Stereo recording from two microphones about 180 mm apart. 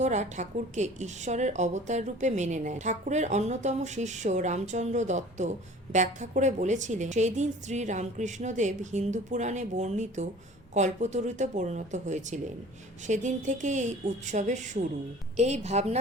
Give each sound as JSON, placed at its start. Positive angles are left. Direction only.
{"t": 0.0, "sound": "a woman's voice", "side_deg": -40}